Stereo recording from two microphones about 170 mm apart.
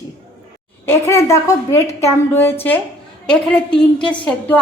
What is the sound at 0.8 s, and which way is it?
A woman's voice, 15° left (ahead or behind).